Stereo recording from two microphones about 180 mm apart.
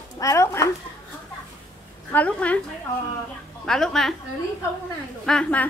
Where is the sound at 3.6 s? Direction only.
5° left (ahead or behind).